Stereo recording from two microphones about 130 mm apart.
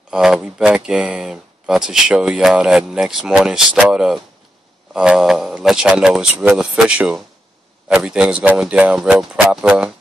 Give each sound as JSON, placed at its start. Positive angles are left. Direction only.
{"t": 0.1, "sound": "speech", "side_deg": -5}